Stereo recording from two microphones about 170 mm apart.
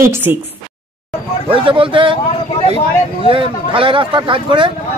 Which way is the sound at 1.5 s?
30° right (ahead or behind).